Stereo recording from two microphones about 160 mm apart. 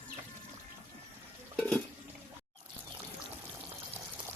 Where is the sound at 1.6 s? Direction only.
5° left (ahead or behind).